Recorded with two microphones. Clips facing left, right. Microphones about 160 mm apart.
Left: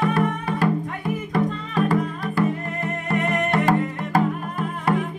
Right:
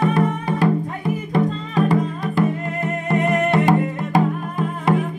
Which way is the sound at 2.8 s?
20° right (ahead or behind).